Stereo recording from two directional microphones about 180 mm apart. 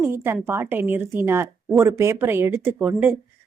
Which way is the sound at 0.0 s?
15° right (ahead or behind).